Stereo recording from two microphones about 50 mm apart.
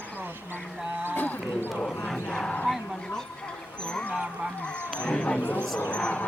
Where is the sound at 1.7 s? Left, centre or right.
Centre.